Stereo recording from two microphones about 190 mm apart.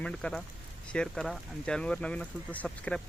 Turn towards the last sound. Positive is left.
turn(degrees=5)  # may be behind; listen again after turning